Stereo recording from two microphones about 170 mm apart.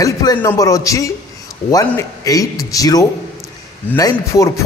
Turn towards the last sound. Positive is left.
turn(degrees=20)  # may be behind; listen again after turning